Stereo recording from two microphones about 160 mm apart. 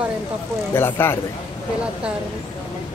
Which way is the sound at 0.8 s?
15° left (ahead or behind).